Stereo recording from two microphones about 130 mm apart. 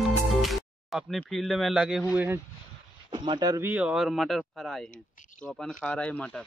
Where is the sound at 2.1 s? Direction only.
20° right (ahead or behind).